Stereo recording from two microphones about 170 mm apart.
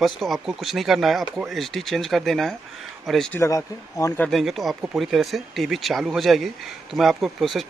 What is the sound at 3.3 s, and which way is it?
Speech, 20° left (ahead or behind).